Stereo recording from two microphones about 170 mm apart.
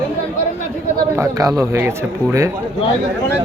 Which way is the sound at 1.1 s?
20° right (ahead or behind).